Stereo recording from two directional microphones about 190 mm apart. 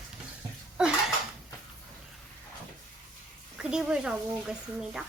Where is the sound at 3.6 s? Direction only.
5° right (ahead or behind).